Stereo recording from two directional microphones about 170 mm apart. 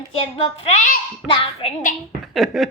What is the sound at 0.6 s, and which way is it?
Speech, 45° left (ahead or behind).